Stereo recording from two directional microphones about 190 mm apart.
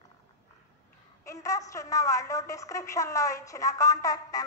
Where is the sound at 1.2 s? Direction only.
15° left (ahead or behind).